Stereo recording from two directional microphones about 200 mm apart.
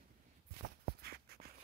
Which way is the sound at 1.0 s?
50° right (ahead or behind).